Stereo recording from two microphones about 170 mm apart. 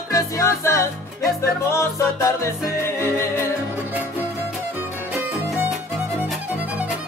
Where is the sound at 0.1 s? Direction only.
15° left (ahead or behind).